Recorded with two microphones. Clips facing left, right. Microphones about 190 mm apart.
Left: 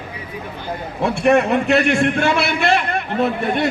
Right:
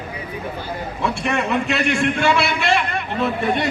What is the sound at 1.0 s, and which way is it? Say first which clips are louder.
A man's voice: left 8 dB; 55° left (ahead or behind).